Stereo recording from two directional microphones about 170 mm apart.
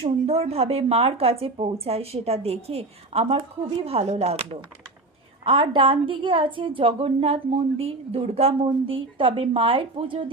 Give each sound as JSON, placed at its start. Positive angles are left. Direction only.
{"t": 0.0, "sound": "a woman's voice", "side_deg": -35}
{"t": 5.5, "sound": "a woman's voice", "side_deg": -30}